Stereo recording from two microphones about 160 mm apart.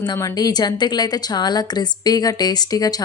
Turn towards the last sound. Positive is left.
turn(degrees=25)  # may be behind; listen again after turning